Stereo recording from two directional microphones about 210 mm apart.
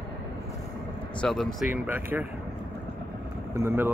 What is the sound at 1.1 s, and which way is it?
Speech, centre (ahead or behind).